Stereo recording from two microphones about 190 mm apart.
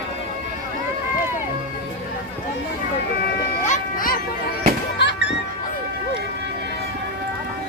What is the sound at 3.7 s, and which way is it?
Music, 45° left (ahead or behind).